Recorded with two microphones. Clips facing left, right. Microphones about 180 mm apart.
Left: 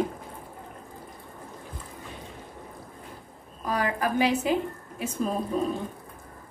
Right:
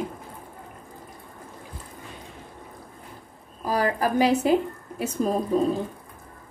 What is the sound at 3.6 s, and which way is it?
A woman's voice, 35° right (ahead or behind).